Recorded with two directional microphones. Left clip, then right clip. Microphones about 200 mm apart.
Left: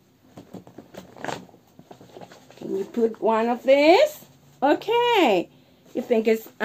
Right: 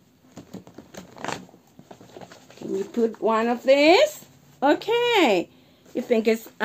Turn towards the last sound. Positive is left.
turn(degrees=-10)  # may be behind; listen again after turning